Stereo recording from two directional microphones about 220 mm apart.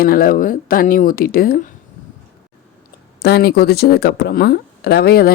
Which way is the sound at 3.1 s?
45° left (ahead or behind).